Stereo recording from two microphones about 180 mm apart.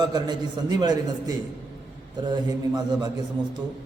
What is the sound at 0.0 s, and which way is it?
A man's voice, 25° right (ahead or behind).